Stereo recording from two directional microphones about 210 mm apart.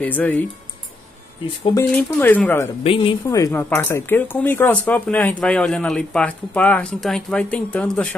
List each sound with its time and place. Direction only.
0.0 s speech: 10° left (ahead or behind)
1.6 s speech: 15° left (ahead or behind)
2.8 s speech: 25° left (ahead or behind)
3.3 s speech: 15° left (ahead or behind)